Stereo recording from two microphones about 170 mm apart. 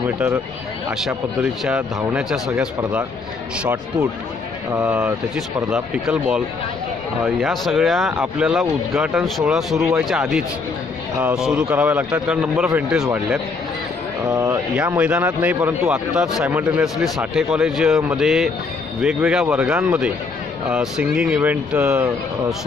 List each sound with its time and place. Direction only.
1.0 s a man's voice: 5° right (ahead or behind)
4.7 s a man's voice: 15° right (ahead or behind)
5.7 s a man's voice: 5° right (ahead or behind)
14.2 s speech: 20° right (ahead or behind)
15.0 s a man's voice: 5° right (ahead or behind)